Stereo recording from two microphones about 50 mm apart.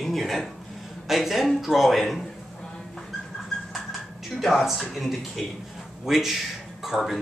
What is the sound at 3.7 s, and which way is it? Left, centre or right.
Speech, centre.